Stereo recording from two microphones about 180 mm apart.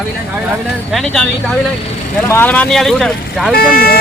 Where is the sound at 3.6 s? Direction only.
55° left (ahead or behind).